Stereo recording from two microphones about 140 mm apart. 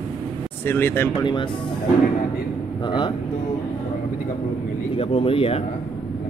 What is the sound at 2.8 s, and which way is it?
Speech, 35° left (ahead or behind).